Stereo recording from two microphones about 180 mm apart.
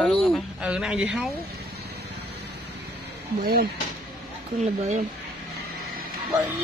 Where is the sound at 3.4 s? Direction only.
55° right (ahead or behind).